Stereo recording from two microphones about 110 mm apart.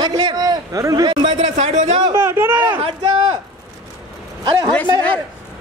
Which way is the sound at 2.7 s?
60° right (ahead or behind).